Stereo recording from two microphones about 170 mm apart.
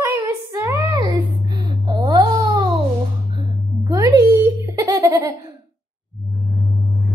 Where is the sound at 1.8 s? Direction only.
25° right (ahead or behind).